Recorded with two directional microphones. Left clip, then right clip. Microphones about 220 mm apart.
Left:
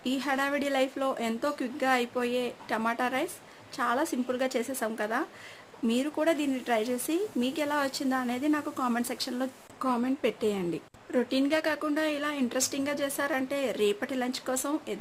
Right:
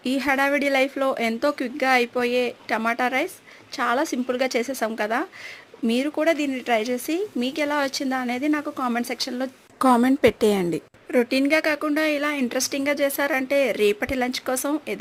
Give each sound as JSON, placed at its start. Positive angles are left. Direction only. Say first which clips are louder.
{"t": 0.0, "sound": "a woman's voice", "louder": "right 8 dB", "side_deg": -25}
{"t": 9.8, "sound": "a woman's voice", "louder": "right 11 dB", "side_deg": -40}
{"t": 11.1, "sound": "a woman's voice", "louder": "right 7 dB", "side_deg": -25}